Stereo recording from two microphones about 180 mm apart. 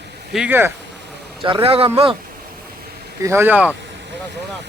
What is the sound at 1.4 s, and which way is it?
Speech, 30° right (ahead or behind).